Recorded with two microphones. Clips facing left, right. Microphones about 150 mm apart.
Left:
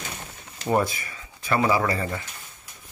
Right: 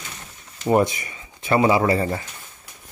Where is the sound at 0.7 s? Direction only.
20° right (ahead or behind).